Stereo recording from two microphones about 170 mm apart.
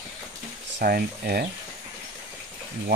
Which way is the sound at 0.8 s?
65° right (ahead or behind).